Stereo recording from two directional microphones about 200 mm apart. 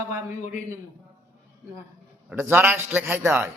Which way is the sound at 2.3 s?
10° right (ahead or behind).